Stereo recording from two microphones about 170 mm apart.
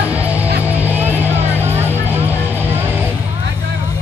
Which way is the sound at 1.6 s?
15° right (ahead or behind).